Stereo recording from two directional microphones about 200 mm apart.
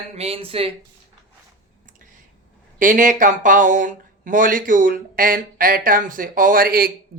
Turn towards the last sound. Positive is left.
turn(degrees=-45)  # may be behind; listen again after turning